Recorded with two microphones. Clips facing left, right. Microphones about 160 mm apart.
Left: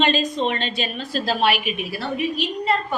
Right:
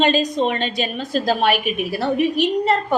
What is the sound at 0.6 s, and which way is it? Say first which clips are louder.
A woman's voice: right 4 dB; 40° right (ahead or behind).